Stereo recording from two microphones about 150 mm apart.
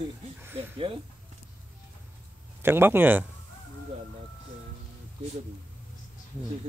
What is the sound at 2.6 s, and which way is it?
Speech, 15° right (ahead or behind).